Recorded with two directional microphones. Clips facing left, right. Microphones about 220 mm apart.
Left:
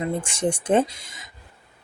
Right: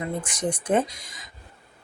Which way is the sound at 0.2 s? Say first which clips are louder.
Left 3 dB; 30° left (ahead or behind).